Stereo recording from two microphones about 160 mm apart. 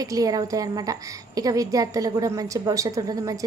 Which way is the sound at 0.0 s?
20° right (ahead or behind).